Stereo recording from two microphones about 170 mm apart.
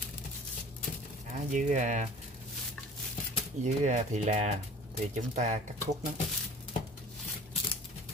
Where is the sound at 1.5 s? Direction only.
45° right (ahead or behind).